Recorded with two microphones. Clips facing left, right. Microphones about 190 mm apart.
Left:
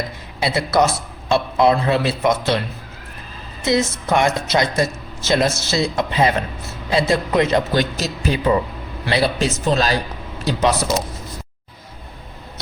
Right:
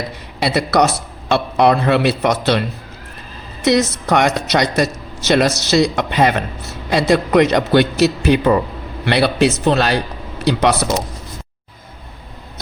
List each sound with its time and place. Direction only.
0.3 s a woman's voice: 70° right (ahead or behind)
3.6 s a woman's voice: 70° right (ahead or behind)